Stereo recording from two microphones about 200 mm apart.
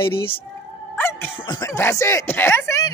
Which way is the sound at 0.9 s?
10° left (ahead or behind).